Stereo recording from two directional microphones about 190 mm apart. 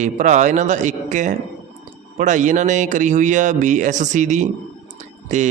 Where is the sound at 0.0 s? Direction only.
40° right (ahead or behind).